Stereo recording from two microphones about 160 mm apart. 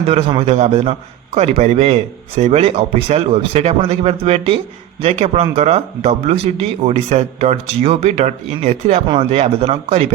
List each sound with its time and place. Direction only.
0.1 s a man's voice: 35° right (ahead or behind)